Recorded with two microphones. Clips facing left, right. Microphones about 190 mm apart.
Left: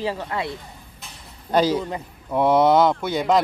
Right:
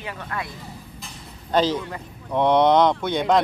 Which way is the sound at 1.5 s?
10° left (ahead or behind).